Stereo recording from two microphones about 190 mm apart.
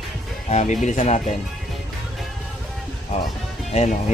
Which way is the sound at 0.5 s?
40° left (ahead or behind).